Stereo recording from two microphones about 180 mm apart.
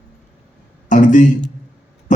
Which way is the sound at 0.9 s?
45° left (ahead or behind).